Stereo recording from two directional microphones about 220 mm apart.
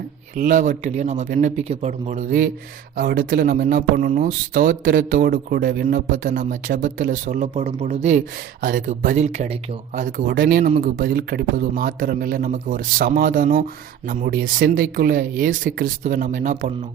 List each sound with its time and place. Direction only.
0.3 s speech: 35° right (ahead or behind)